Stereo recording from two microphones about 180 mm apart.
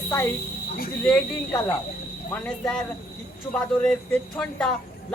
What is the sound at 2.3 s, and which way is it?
Speech, 5° left (ahead or behind).